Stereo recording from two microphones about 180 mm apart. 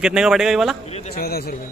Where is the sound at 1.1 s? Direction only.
60° left (ahead or behind).